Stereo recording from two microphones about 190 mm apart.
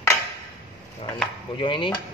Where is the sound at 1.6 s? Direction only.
25° left (ahead or behind).